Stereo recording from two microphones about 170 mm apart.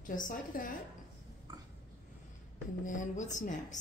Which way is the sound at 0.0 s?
55° left (ahead or behind).